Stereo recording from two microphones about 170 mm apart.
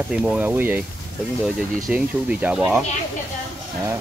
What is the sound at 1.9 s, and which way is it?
Speech, 5° right (ahead or behind).